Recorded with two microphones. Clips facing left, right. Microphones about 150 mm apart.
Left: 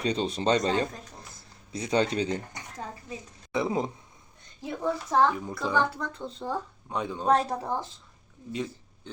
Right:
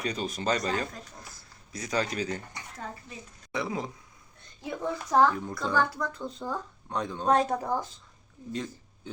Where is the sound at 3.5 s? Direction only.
25° left (ahead or behind).